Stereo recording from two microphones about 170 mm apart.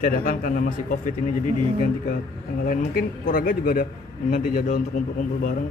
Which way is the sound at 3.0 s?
55° left (ahead or behind).